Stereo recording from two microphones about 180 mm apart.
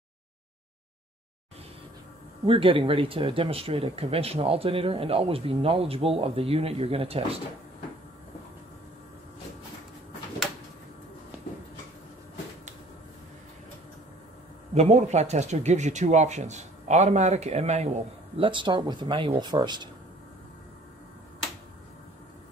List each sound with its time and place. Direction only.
2.4 s speech: 30° right (ahead or behind)
14.7 s speech: 40° right (ahead or behind)
18.4 s speech: 25° right (ahead or behind)